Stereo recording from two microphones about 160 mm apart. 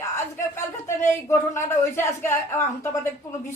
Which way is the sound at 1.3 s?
15° left (ahead or behind).